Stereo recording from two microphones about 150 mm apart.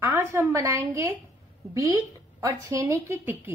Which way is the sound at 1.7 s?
20° right (ahead or behind).